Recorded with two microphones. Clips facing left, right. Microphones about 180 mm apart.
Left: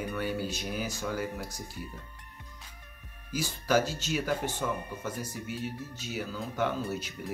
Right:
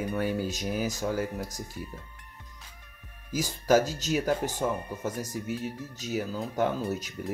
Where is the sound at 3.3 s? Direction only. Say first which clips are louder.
Right 4 dB; 40° right (ahead or behind).